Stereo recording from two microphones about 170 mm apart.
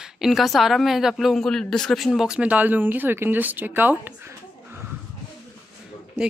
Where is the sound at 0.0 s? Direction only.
Centre (ahead or behind).